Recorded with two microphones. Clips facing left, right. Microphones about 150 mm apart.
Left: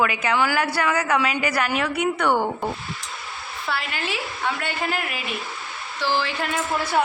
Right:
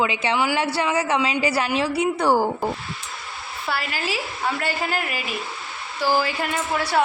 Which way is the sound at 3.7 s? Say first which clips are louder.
Right 1 dB; 5° right (ahead or behind).